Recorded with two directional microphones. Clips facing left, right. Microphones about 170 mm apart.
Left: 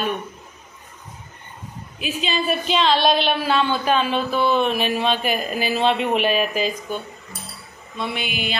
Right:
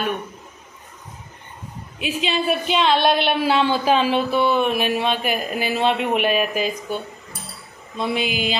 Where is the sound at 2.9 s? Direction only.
60° right (ahead or behind).